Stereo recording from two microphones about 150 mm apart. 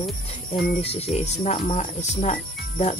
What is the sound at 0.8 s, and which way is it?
Speech, 45° left (ahead or behind).